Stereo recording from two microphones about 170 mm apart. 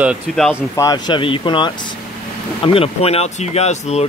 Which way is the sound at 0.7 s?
20° left (ahead or behind).